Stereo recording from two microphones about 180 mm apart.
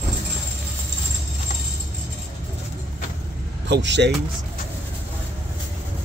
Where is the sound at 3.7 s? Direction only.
75° right (ahead or behind).